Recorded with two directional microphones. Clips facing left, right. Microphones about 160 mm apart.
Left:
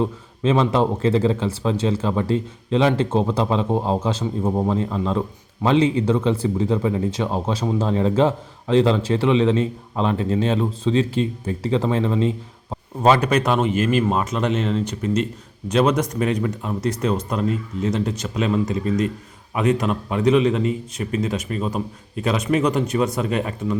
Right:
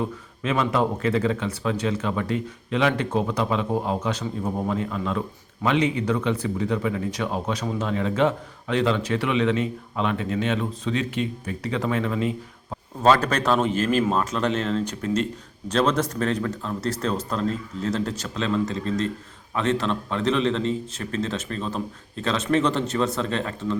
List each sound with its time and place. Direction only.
0.0 s a man's voice: 30° left (ahead or behind)
13.0 s a man's voice: 10° left (ahead or behind)